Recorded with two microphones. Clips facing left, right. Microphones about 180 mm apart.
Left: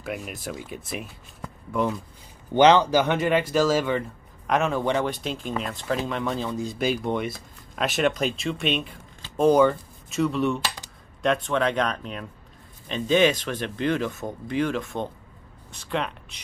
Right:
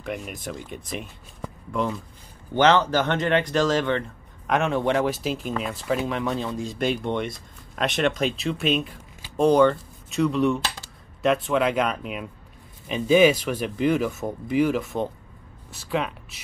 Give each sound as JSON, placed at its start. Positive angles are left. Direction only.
{"t": 0.0, "sound": "speech", "side_deg": 5}
{"t": 2.5, "sound": "speech", "side_deg": 15}